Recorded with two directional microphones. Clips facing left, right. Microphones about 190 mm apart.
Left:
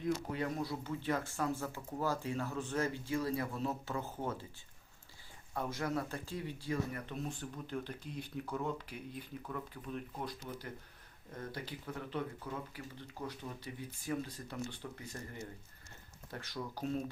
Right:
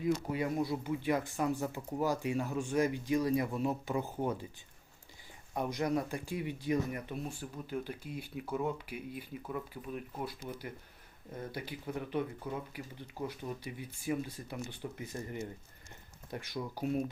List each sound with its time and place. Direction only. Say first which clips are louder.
0.0 s speech: right 4 dB; 10° right (ahead or behind)
5.5 s speech: right 4 dB; 15° right (ahead or behind)
11.3 s speech: right 2 dB; 10° right (ahead or behind)